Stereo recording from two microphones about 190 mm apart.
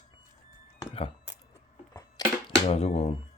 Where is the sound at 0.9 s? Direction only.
30° left (ahead or behind).